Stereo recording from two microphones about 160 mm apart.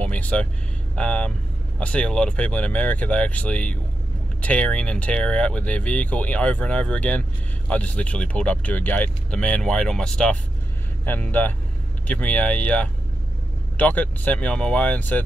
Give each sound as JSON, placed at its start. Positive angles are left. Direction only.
{"t": 0.0, "sound": "vehicle", "side_deg": 10}
{"t": 0.9, "sound": "speech", "side_deg": 5}